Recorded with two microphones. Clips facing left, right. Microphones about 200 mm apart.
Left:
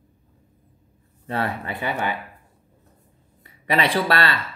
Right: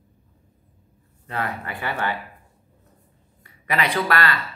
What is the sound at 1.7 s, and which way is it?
Speech, 20° left (ahead or behind).